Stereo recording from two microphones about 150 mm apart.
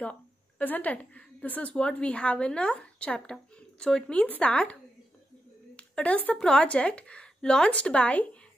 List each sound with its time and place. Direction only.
0.0 s a woman's voice: 10° left (ahead or behind)
5.8 s a woman's voice: 10° left (ahead or behind)